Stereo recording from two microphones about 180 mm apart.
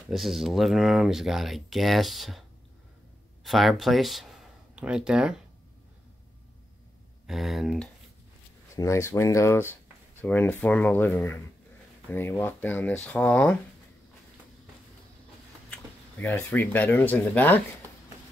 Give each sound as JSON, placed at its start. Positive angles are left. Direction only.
{"t": 0.1, "sound": "speech", "side_deg": 0}
{"t": 3.4, "sound": "speech", "side_deg": 0}
{"t": 7.2, "sound": "speech", "side_deg": 0}
{"t": 8.7, "sound": "speech", "side_deg": 15}
{"t": 16.2, "sound": "speech", "side_deg": 10}